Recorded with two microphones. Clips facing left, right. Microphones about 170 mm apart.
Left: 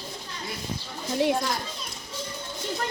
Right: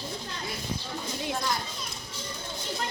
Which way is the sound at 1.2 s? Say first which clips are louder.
Left 12 dB; 70° left (ahead or behind).